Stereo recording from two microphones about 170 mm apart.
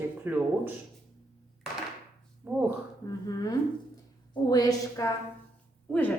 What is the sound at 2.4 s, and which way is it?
Speech, 10° right (ahead or behind).